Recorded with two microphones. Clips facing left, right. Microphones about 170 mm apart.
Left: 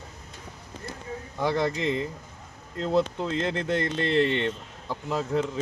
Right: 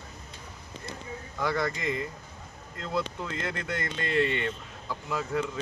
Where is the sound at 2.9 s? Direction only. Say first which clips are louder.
Left 7 dB; 25° left (ahead or behind).